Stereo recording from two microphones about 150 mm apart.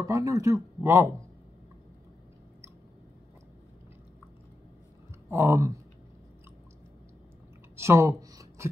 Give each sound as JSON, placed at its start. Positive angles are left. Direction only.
{"t": 0.0, "sound": "speech", "side_deg": -20}
{"t": 5.3, "sound": "speech", "side_deg": -20}
{"t": 7.7, "sound": "a sound", "side_deg": -20}